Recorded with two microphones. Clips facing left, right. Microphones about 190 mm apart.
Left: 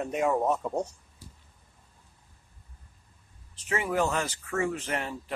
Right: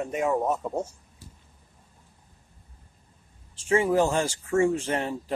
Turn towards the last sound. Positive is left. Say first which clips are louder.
# right 5 dB
turn(degrees=-30)  # may be behind; listen again after turning